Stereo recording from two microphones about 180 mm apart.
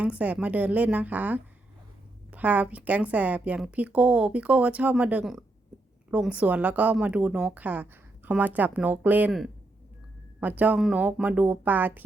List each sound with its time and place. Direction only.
0.0 s speech: 10° right (ahead or behind)